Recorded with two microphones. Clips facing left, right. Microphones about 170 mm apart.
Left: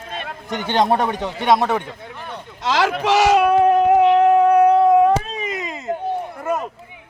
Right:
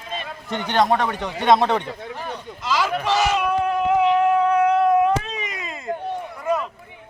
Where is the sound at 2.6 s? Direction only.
90° left; by 4.9 s 35° left (ahead or behind).